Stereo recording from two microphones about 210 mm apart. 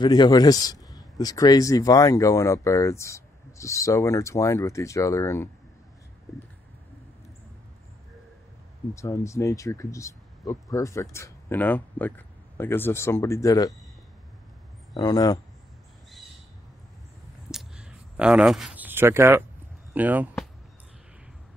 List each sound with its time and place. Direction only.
0.0 s a man's voice: 20° left (ahead or behind)
8.9 s a man's voice: 15° left (ahead or behind)
15.0 s a man's voice: 20° left (ahead or behind)
17.5 s a sound: 5° right (ahead or behind)
19.9 s speech: 10° right (ahead or behind)